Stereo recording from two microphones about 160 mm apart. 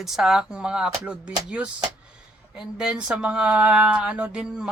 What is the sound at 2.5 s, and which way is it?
Speech, 5° right (ahead or behind).